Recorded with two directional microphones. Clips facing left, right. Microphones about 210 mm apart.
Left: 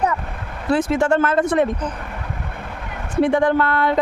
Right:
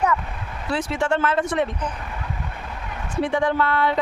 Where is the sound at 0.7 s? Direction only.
50° left (ahead or behind).